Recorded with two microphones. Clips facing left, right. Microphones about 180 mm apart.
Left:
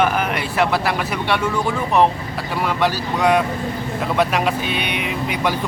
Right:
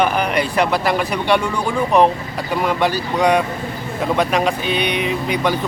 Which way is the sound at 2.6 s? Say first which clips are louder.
Right 1 dB; 5° left (ahead or behind).